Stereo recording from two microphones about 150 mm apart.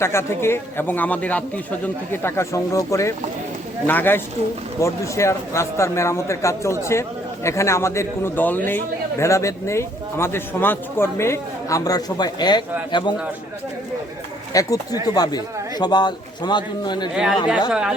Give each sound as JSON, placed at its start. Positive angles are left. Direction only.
{"t": 0.0, "sound": "a man's voice", "side_deg": 15}
{"t": 14.5, "sound": "a man's voice", "side_deg": 25}
{"t": 17.7, "sound": "speech", "side_deg": -5}